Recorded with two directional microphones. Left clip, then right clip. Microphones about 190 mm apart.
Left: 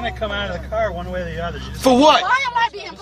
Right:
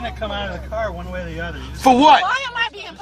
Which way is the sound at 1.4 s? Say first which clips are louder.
Right 3 dB; 25° left (ahead or behind).